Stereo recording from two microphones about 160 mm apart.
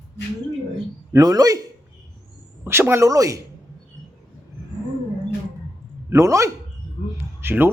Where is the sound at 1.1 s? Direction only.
25° right (ahead or behind).